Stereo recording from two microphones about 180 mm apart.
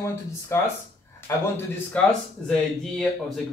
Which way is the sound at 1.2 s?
10° left (ahead or behind).